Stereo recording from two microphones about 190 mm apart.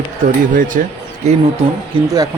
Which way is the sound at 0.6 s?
45° right (ahead or behind).